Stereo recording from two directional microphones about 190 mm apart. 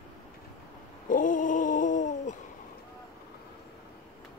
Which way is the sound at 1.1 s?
45° left (ahead or behind).